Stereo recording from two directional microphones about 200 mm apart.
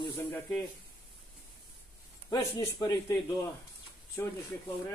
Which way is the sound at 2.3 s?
20° left (ahead or behind).